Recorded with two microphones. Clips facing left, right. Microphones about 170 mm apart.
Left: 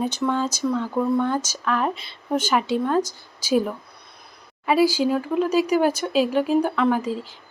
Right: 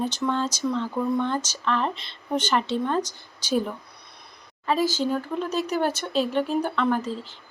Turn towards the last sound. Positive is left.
turn(degrees=10)  # may be behind; listen again after turning